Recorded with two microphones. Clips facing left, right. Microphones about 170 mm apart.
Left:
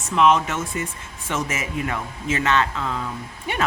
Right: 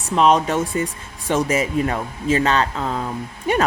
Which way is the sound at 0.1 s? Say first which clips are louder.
Right 2 dB; 35° right (ahead or behind).